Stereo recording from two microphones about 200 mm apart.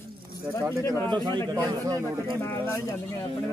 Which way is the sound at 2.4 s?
10° left (ahead or behind).